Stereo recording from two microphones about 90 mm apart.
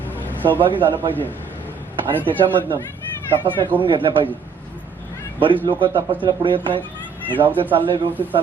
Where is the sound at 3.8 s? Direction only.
70° right (ahead or behind).